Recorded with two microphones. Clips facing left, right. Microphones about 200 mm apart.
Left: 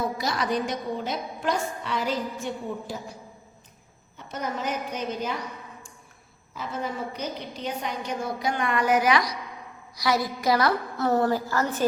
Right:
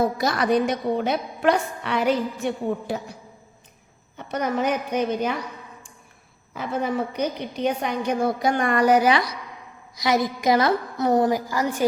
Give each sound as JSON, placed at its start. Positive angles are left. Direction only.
{"t": 0.2, "sound": "a woman's voice", "side_deg": -55}
{"t": 4.2, "sound": "a woman's voice", "side_deg": -65}
{"t": 6.5, "sound": "a woman's voice", "side_deg": -60}
{"t": 9.9, "sound": "a woman's voice", "side_deg": -20}